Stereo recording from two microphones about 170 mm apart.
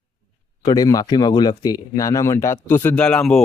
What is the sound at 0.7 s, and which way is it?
A man's voice, 20° left (ahead or behind).